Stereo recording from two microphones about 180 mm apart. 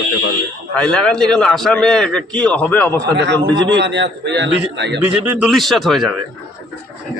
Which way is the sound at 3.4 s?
25° right (ahead or behind).